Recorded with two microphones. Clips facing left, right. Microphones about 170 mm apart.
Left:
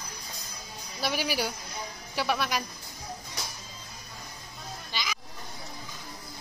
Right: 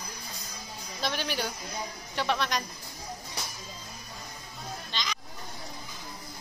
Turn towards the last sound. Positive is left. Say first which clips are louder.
# even
turn(degrees=5)  # may be behind; listen again after turning